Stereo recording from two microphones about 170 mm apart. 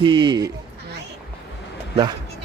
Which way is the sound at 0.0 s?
30° right (ahead or behind).